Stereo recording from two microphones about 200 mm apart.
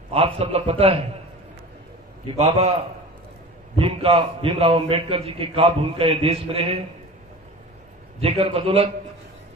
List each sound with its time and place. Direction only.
0.1 s a man's voice: 30° right (ahead or behind)
2.3 s a man's voice: 30° right (ahead or behind)
8.2 s a man's voice: 30° right (ahead or behind)